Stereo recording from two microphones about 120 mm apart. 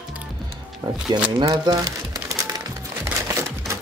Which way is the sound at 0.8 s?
35° right (ahead or behind).